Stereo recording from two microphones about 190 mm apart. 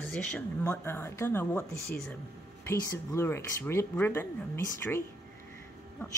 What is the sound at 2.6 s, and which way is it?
Speech, 15° left (ahead or behind).